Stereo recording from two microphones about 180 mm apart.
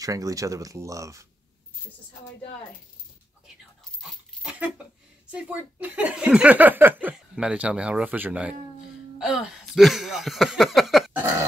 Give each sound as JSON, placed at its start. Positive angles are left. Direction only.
{"t": 0.0, "sound": "speech", "side_deg": -20}
{"t": 4.0, "sound": "dog", "side_deg": -5}
{"t": 5.3, "sound": "speech", "side_deg": -10}